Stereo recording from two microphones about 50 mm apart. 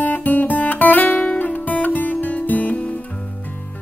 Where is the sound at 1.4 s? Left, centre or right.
Left.